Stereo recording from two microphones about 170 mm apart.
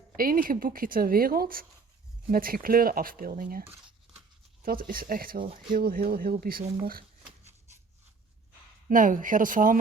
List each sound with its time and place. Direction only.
0.2 s a woman's voice: 55° right (ahead or behind)
3.7 s tearing: 10° right (ahead or behind)
4.6 s a woman's voice: 55° right (ahead or behind)
8.9 s speech: 50° right (ahead or behind)